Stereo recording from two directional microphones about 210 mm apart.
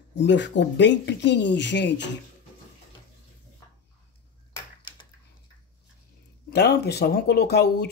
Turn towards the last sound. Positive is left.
turn(degrees=50)  # may be behind; listen again after turning